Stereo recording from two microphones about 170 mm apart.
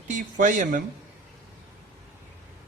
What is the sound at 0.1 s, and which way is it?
Speech, 50° right (ahead or behind).